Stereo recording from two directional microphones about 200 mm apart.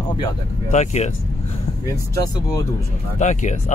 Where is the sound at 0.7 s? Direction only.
35° left (ahead or behind).